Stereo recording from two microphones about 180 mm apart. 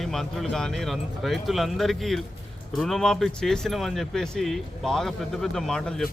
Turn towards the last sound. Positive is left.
turn(degrees=5)  # may be behind; listen again after turning